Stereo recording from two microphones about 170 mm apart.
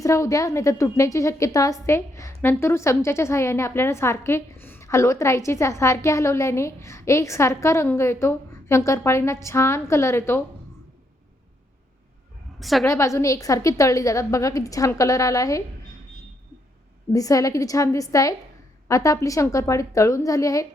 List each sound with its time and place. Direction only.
0.0 s a woman's voice: 20° left (ahead or behind)
12.5 s a sound: centre (ahead or behind)
12.8 s a woman's voice: 20° left (ahead or behind)
17.1 s a woman's voice: 20° left (ahead or behind)